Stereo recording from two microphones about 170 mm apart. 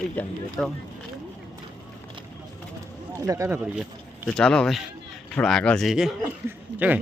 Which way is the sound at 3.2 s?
20° right (ahead or behind).